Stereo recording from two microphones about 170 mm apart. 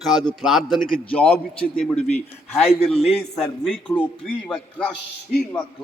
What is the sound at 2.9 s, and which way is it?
Speech, 35° left (ahead or behind).